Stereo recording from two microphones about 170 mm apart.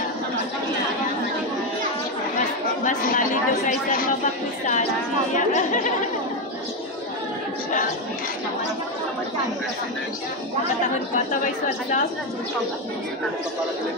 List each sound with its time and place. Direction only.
2.8 s speech: 50° left (ahead or behind)